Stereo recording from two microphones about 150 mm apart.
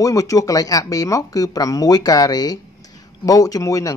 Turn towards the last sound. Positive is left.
turn(degrees=20)  # may be behind; listen again after turning